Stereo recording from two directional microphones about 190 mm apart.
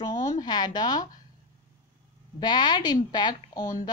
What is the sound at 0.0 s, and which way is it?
Speech, 20° left (ahead or behind).